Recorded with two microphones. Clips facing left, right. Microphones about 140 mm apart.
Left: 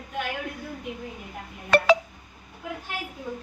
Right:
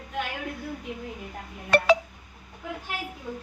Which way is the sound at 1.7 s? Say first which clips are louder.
Left 1 dB; 90° left.